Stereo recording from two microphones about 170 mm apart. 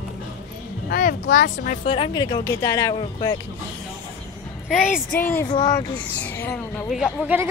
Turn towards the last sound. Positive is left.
turn(degrees=-5)  # may be behind; listen again after turning